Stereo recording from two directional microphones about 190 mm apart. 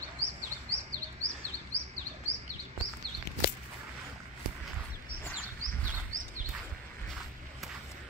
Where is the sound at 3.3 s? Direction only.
60° left (ahead or behind).